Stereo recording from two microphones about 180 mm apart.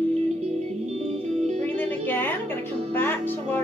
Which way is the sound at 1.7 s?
10° left (ahead or behind).